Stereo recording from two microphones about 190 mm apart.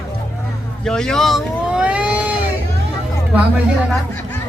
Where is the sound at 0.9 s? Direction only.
5° left (ahead or behind).